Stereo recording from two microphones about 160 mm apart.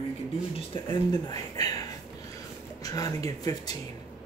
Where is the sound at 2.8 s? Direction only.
20° left (ahead or behind).